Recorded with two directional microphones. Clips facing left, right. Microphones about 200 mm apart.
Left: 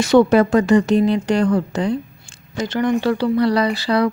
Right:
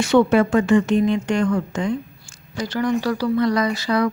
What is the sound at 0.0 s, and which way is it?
Speech, 40° left (ahead or behind).